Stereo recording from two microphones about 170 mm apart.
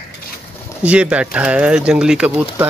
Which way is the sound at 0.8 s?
5° right (ahead or behind).